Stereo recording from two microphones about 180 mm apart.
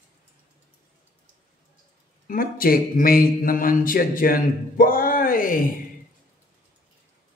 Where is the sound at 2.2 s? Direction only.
55° left (ahead or behind).